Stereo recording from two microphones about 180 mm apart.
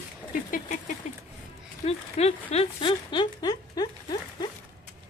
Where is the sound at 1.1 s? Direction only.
40° left (ahead or behind); by 3.9 s 20° left (ahead or behind).